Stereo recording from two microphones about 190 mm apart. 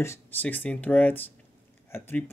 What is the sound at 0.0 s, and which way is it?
Speech, 10° left (ahead or behind).